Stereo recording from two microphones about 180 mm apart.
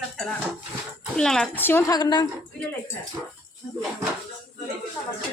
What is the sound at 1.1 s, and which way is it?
Speech, 5° left (ahead or behind).